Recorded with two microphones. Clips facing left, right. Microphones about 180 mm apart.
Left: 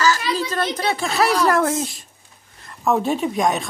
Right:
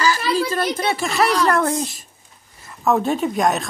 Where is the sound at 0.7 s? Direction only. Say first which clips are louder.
Right 1 dB; 5° right (ahead or behind).